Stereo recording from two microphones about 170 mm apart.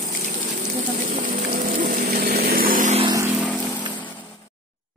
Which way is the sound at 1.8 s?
55° right (ahead or behind).